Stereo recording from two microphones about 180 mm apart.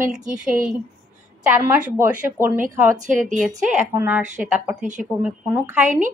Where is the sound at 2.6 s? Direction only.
45° right (ahead or behind).